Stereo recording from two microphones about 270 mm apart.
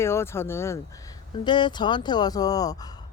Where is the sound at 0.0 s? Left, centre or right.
Centre.